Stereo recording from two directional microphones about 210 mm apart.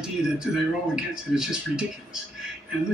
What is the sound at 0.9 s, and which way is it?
Speech, 5° right (ahead or behind).